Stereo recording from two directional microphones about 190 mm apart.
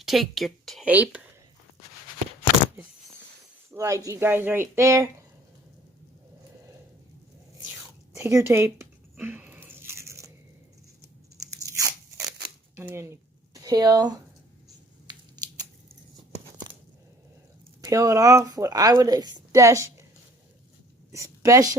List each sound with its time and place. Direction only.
0.0 s speech: centre (ahead or behind)
3.7 s speech: 15° right (ahead or behind)
8.1 s speech: 15° right (ahead or behind)
9.1 s crunch: 10° right (ahead or behind)
11.6 s crunch: 15° right (ahead or behind)
12.7 s speech: 15° right (ahead or behind)
17.8 s speech: 15° right (ahead or behind)
21.1 s a woman's voice: 15° right (ahead or behind)